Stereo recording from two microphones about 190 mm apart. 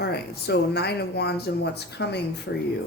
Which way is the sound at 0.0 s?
55° left (ahead or behind).